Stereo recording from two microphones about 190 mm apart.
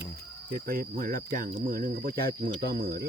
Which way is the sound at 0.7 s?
50° right (ahead or behind).